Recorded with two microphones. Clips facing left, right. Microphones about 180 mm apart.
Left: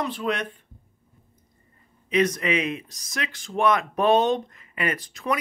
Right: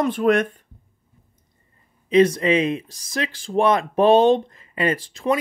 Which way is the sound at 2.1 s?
30° right (ahead or behind).